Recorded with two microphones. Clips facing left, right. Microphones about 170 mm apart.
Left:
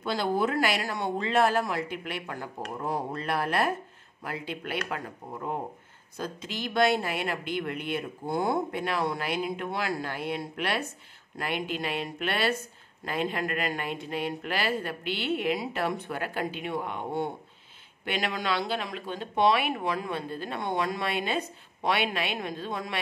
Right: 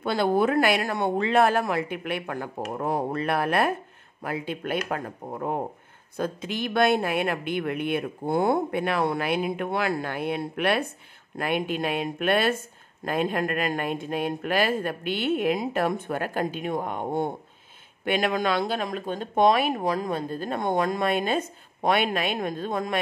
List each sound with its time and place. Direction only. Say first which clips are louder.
0.0 s speech: right 5 dB; 55° right (ahead or behind)